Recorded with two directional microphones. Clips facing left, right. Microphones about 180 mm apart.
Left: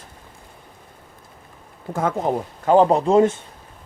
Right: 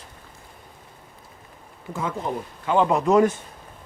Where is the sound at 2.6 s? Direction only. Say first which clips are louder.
Left 5 dB; 35° left (ahead or behind).